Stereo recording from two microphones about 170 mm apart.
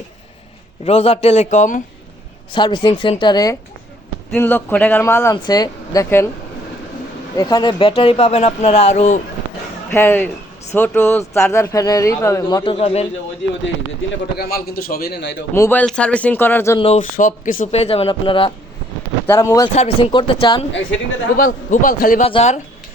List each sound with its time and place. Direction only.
0.9 s speech: 35° left (ahead or behind)
2.5 s a woman's voice: 25° left (ahead or behind)
4.3 s speech: 10° left (ahead or behind)
7.3 s speech: 25° left (ahead or behind); by 9.2 s 45° left (ahead or behind)
9.9 s speech: 10° left (ahead or behind); by 13.1 s 35° left (ahead or behind)
14.3 s a man's voice: 65° left (ahead or behind); by 15.4 s 80° left
15.5 s speech: 15° left (ahead or behind)
16.7 s speech: 35° left (ahead or behind)
17.0 s speech: 50° left (ahead or behind); by 18.5 s 30° left (ahead or behind)
19.3 s speech: 15° left (ahead or behind)
19.7 s speech: 35° left (ahead or behind)
21.3 s a man's voice: 50° left (ahead or behind)
22.2 s speech: 35° left (ahead or behind)